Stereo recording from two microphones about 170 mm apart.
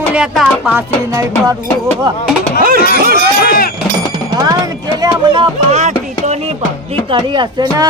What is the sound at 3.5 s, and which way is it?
Cowbell, 60° left (ahead or behind).